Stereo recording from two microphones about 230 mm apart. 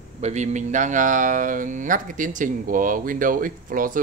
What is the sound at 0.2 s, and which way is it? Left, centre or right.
Speech, right.